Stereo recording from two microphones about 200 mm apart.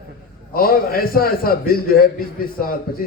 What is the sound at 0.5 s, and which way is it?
A man's voice, 45° left (ahead or behind).